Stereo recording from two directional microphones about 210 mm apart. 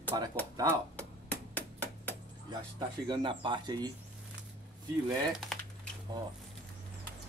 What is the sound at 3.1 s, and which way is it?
Speech, 20° right (ahead or behind).